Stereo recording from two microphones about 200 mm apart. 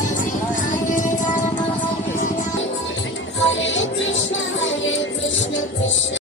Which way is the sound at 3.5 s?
70° left (ahead or behind).